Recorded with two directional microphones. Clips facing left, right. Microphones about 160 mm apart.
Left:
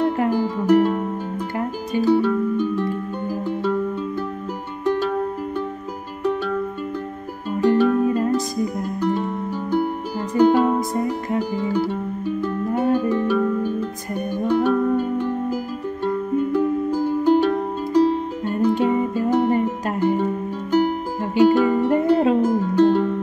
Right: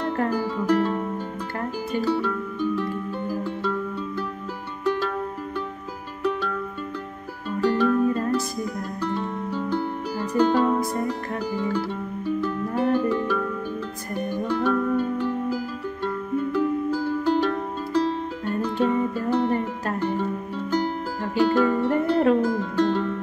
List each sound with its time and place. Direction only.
0.0 s music: 15° left (ahead or behind)
7.6 s music: 20° left (ahead or behind)